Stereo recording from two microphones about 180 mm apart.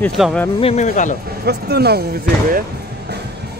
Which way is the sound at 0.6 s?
35° left (ahead or behind).